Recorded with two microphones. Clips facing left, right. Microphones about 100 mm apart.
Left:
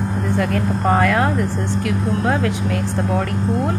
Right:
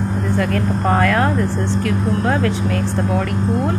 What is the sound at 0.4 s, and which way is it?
Speech, 20° left (ahead or behind).